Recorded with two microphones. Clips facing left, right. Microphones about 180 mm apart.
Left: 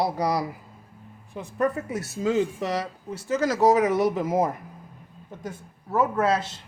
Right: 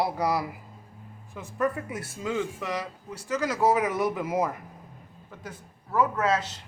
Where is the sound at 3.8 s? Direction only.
25° left (ahead or behind).